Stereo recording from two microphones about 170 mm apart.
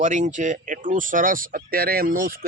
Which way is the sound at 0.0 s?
45° right (ahead or behind).